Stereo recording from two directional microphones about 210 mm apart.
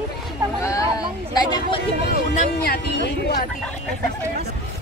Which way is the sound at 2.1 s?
45° left (ahead or behind).